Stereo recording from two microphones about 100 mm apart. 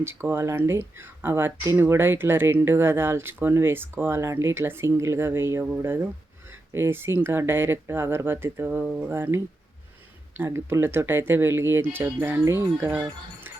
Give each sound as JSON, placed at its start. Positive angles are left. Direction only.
{"t": 0.0, "sound": "speech", "side_deg": -20}